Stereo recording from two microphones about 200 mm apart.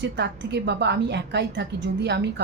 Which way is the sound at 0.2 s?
60° right (ahead or behind).